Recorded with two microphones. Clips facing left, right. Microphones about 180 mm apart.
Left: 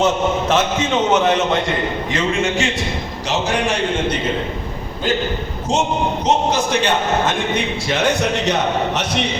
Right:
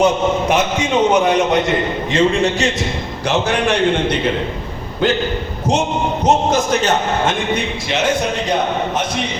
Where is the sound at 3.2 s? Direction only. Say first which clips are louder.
Right 3 dB; 60° right (ahead or behind).